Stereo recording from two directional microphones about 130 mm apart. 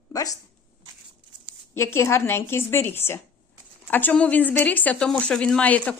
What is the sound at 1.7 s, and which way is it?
A woman's voice, 20° left (ahead or behind).